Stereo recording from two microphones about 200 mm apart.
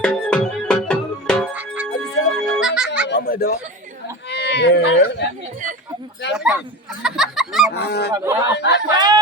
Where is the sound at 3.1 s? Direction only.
50° left (ahead or behind).